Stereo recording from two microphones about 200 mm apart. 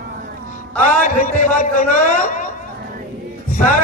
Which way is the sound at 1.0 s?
40° left (ahead or behind).